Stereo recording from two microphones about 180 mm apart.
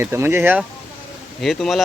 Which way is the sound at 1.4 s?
Centre (ahead or behind).